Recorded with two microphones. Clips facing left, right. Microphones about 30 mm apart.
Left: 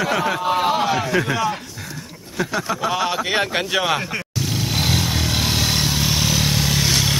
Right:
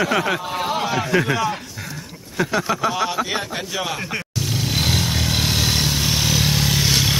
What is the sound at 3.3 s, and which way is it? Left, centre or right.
Speech, left.